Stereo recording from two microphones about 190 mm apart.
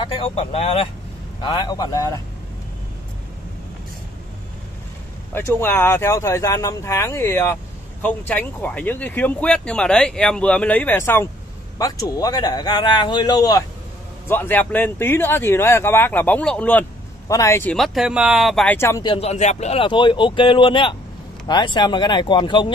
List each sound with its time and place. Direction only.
0.0 s a man's voice: 30° left (ahead or behind)
5.3 s a man's voice: 10° left (ahead or behind)
17.7 s speech: centre (ahead or behind)
18.8 s speech: 15° left (ahead or behind)
19.0 s a man's voice: 30° left (ahead or behind)